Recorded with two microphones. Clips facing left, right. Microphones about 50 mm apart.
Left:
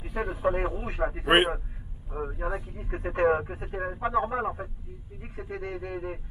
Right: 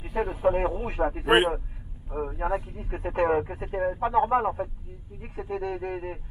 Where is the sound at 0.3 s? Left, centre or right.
Right.